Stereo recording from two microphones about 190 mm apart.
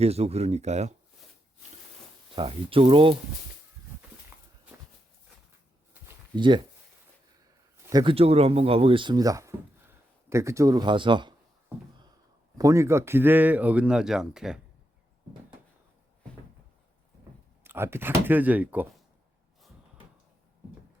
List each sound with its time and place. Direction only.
0.0 s speech: 35° right (ahead or behind)
2.3 s speech: 30° right (ahead or behind)
6.3 s speech: 25° right (ahead or behind)
7.9 s speech: 25° right (ahead or behind)
11.7 s speech: 10° right (ahead or behind)
17.6 s speech: 10° right (ahead or behind)